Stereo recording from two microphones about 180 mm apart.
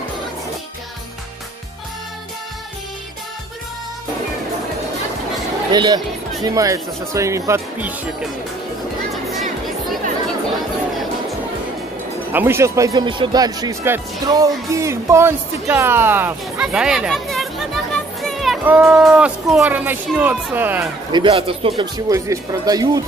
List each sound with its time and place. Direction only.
5.7 s speech: 25° right (ahead or behind)
9.1 s music: centre (ahead or behind)
12.3 s speech: 10° right (ahead or behind)
15.7 s a sound: 10° right (ahead or behind)
18.7 s speech: 5° right (ahead or behind)
21.1 s speech: 30° right (ahead or behind)
22.1 s speech: 20° right (ahead or behind)